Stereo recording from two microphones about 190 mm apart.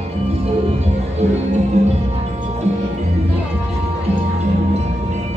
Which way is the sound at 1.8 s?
35° right (ahead or behind).